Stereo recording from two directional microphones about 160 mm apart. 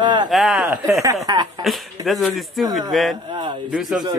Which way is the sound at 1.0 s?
20° right (ahead or behind).